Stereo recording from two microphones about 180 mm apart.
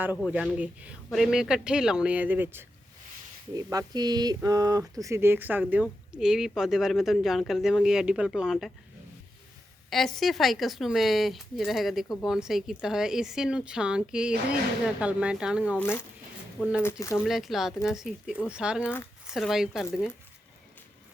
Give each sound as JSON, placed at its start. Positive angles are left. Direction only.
{"t": 0.2, "sound": "a woman's voice", "side_deg": -5}
{"t": 9.9, "sound": "speech", "side_deg": 0}
{"t": 15.8, "sound": "speech", "side_deg": 10}
{"t": 17.2, "sound": "speech", "side_deg": 0}
{"t": 18.8, "sound": "speech", "side_deg": 10}
{"t": 19.3, "sound": "speech", "side_deg": 0}